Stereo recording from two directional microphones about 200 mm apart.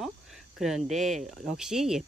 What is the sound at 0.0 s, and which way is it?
Cricket, centre (ahead or behind).